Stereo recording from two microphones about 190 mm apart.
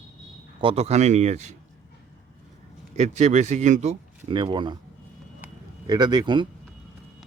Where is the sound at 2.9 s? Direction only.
40° right (ahead or behind).